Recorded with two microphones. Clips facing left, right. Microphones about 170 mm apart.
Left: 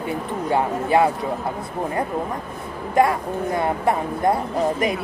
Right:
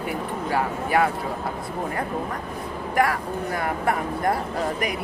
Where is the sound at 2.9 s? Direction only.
25° left (ahead or behind).